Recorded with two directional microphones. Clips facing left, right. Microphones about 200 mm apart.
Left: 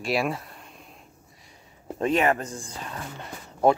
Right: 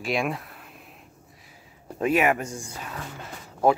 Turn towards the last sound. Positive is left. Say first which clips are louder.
# left 1 dB
turn(degrees=0)  # may be behind; listen again after turning